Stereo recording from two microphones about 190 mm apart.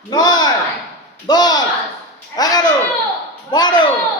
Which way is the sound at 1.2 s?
20° left (ahead or behind).